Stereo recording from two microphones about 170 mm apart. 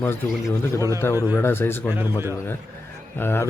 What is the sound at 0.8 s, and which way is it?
Speech, 20° right (ahead or behind).